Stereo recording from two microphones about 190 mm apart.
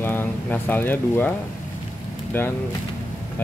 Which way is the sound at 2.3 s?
10° left (ahead or behind).